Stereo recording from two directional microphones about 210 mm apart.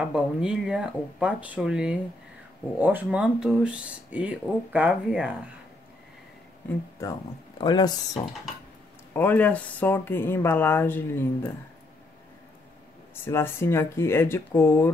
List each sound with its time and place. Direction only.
0.0 s speech: 5° right (ahead or behind)
7.6 s speech: 20° left (ahead or behind)
9.1 s speech: 10° left (ahead or behind)
13.1 s speech: 10° left (ahead or behind)